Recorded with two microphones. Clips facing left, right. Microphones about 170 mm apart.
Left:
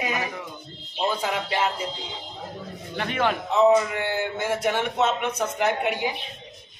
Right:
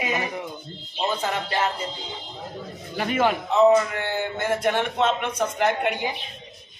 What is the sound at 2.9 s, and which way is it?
Speech, 5° right (ahead or behind).